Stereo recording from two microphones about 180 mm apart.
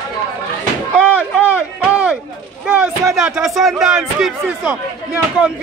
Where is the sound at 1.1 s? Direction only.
10° right (ahead or behind).